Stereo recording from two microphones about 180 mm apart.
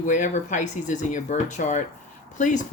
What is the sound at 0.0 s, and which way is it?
Speech, 45° left (ahead or behind).